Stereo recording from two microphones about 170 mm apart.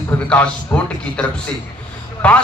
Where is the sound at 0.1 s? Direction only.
10° left (ahead or behind).